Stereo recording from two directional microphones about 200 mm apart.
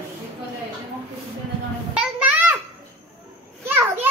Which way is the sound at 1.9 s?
5° right (ahead or behind).